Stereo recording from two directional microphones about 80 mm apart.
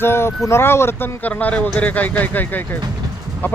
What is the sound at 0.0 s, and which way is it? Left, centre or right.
Speech, left.